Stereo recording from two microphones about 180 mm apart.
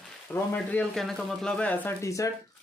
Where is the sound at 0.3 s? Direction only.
10° left (ahead or behind).